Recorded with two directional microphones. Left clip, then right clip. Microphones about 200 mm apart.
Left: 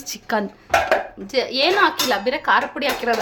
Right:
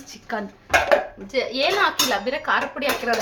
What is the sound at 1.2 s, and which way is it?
A woman's voice, 45° left (ahead or behind).